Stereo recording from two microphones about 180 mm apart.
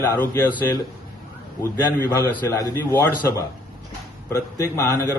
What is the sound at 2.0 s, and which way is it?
A man's voice, 10° left (ahead or behind).